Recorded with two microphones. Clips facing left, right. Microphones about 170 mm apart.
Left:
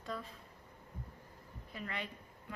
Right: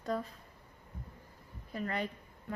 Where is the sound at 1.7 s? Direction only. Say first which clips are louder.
Right 7 dB; 45° right (ahead or behind).